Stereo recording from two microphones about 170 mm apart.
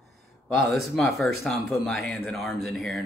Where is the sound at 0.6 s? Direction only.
Centre (ahead or behind).